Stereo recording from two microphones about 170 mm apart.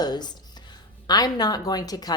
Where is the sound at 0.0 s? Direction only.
25° left (ahead or behind).